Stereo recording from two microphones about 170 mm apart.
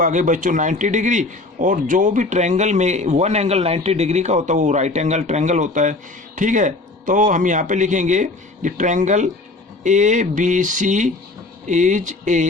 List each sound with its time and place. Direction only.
0.0 s a man's voice: 50° right (ahead or behind)